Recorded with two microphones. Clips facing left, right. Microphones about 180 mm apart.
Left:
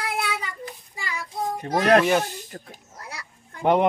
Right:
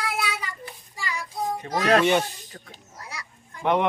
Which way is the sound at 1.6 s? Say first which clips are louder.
Left 3 dB; 55° left (ahead or behind).